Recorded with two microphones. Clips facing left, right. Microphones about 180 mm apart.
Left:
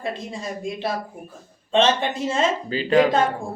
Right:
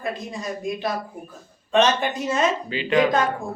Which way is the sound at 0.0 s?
25° left (ahead or behind).